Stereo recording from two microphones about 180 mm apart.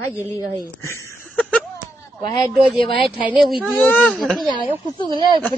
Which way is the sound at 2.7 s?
25° left (ahead or behind).